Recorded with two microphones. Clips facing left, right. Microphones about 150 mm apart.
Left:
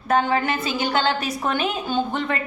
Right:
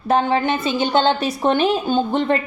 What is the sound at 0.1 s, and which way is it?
A woman's voice, 30° right (ahead or behind).